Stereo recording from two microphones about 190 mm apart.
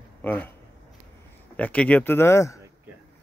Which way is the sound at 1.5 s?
5° left (ahead or behind).